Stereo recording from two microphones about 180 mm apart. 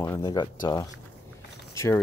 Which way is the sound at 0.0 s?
15° left (ahead or behind).